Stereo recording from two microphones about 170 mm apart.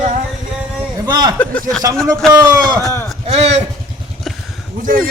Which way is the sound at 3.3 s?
40° right (ahead or behind).